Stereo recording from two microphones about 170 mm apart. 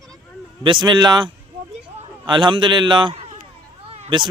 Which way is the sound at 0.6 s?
25° right (ahead or behind).